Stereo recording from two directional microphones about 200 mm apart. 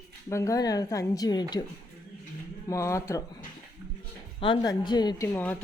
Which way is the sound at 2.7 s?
15° left (ahead or behind).